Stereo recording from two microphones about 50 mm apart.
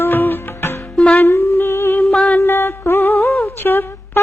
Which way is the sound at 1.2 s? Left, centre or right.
Left.